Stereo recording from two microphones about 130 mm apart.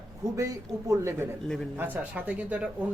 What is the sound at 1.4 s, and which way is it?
Speech, 5° left (ahead or behind).